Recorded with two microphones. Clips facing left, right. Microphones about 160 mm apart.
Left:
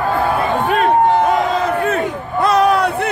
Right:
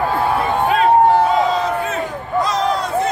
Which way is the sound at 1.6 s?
60° left (ahead or behind).